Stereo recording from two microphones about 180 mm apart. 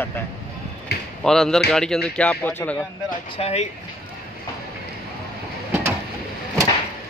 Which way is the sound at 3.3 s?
35° left (ahead or behind).